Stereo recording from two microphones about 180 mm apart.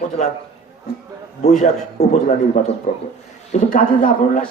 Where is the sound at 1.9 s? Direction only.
40° left (ahead or behind).